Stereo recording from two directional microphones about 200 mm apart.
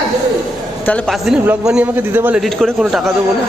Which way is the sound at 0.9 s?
Centre (ahead or behind).